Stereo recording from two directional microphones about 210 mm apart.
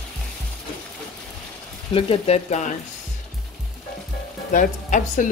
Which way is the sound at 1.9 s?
25° left (ahead or behind).